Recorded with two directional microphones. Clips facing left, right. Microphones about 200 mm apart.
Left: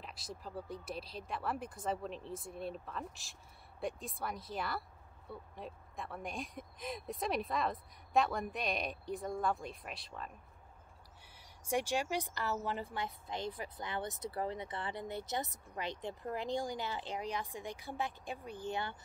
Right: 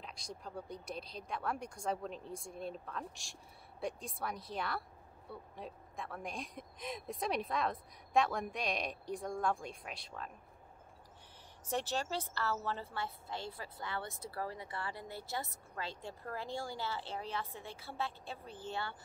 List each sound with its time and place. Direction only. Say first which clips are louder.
0.0 s speech: left 1 dB; 5° left (ahead or behind)
11.6 s a woman's voice: left 3 dB; 10° left (ahead or behind)